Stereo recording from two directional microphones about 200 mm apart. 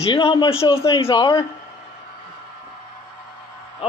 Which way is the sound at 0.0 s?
25° left (ahead or behind).